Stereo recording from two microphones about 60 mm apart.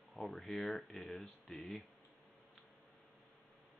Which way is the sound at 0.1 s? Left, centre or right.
Centre.